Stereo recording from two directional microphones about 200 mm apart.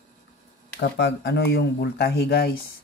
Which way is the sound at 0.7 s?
60° left (ahead or behind).